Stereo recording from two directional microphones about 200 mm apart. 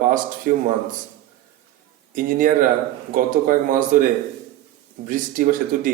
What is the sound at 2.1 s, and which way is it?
Speech, 45° right (ahead or behind).